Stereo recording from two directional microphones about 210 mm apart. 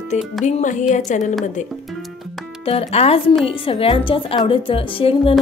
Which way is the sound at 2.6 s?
30° left (ahead or behind).